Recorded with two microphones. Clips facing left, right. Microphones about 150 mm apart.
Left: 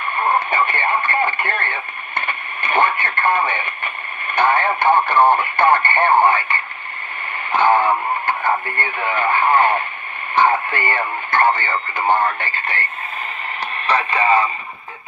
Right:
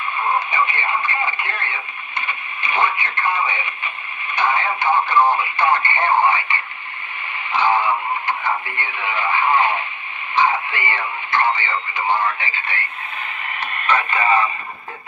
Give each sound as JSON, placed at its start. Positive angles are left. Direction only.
{"t": 0.3, "sound": "speech", "side_deg": 55}
{"t": 13.8, "sound": "speech", "side_deg": 35}